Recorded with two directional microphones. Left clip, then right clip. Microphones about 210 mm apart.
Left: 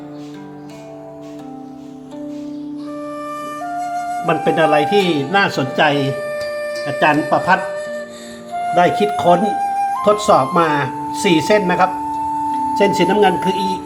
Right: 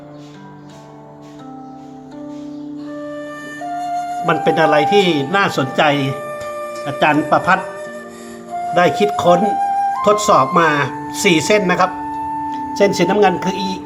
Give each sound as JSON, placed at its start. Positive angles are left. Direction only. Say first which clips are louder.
{"t": 3.7, "sound": "speech", "louder": "right 2 dB", "side_deg": 0}
{"t": 8.7, "sound": "speech", "louder": "even", "side_deg": -5}